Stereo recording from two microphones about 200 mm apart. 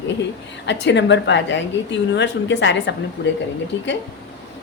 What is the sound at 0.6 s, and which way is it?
A woman's voice, 60° left (ahead or behind).